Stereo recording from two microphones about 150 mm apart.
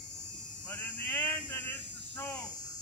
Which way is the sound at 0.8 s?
10° left (ahead or behind).